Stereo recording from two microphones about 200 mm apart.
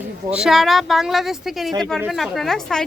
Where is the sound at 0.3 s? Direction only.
5° right (ahead or behind).